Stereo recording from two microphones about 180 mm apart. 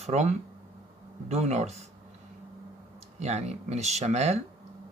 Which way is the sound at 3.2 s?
40° right (ahead or behind).